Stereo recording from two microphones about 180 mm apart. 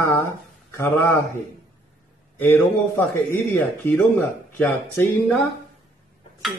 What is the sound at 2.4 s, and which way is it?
Speech, 10° left (ahead or behind).